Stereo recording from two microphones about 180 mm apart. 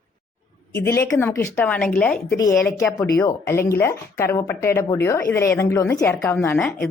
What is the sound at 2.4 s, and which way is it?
Speech, 15° left (ahead or behind).